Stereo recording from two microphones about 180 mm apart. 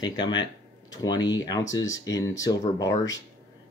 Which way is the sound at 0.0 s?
25° left (ahead or behind).